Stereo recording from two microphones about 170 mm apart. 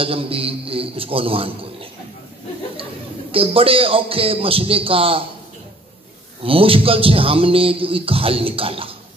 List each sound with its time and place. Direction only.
0.0 s a man's voice: 35° right (ahead or behind)
6.4 s speech: 35° right (ahead or behind)